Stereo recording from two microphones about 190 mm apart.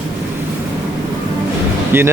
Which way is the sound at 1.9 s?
10° right (ahead or behind).